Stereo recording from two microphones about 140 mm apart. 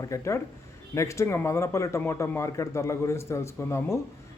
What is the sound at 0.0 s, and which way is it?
A man's voice, 20° left (ahead or behind).